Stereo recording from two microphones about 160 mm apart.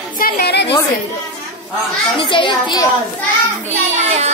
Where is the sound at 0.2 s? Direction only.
85° left.